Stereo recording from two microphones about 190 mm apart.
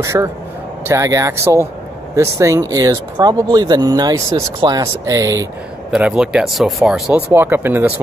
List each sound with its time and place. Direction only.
0.0 s speech: 15° right (ahead or behind)
5.9 s speech: 5° right (ahead or behind)